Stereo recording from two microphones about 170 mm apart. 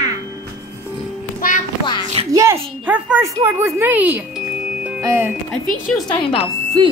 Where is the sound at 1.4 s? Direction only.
50° left (ahead or behind).